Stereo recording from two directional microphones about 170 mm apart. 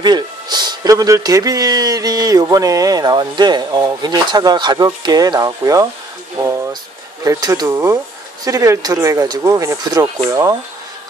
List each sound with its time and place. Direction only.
0.0 s speech: 25° right (ahead or behind)
6.3 s a sound: 15° right (ahead or behind)
7.2 s speech: 25° right (ahead or behind)